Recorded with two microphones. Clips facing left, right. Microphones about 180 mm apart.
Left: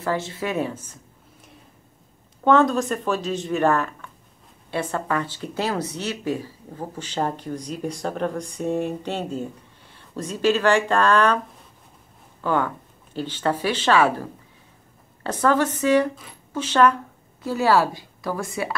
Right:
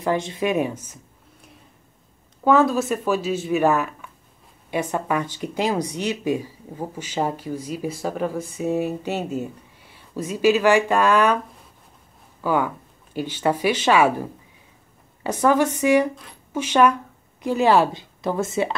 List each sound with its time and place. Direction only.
0.0 s speech: 15° right (ahead or behind)
2.4 s speech: 5° right (ahead or behind)
12.4 s a woman's voice: 10° right (ahead or behind)